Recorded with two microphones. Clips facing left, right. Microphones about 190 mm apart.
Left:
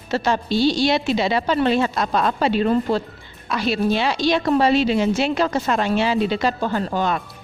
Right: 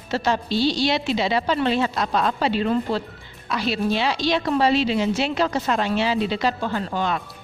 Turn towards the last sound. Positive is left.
turn(degrees=45)  # may be behind; listen again after turning